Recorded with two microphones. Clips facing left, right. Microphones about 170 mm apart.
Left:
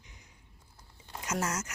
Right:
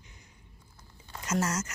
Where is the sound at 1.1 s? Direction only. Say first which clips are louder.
Right 3 dB; 10° left (ahead or behind).